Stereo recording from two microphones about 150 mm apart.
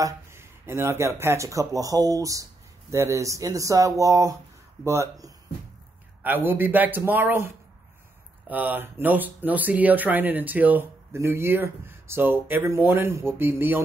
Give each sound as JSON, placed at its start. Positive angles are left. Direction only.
{"t": 0.0, "sound": "speech", "side_deg": -15}